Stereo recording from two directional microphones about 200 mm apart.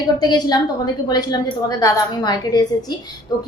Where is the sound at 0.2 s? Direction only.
20° left (ahead or behind).